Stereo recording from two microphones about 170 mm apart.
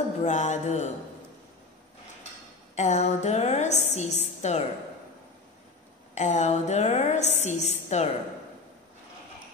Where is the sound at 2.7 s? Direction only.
40° left (ahead or behind).